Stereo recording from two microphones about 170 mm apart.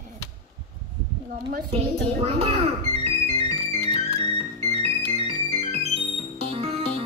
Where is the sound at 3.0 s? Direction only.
35° right (ahead or behind).